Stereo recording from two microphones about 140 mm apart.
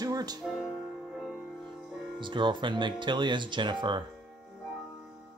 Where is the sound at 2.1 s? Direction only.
35° right (ahead or behind).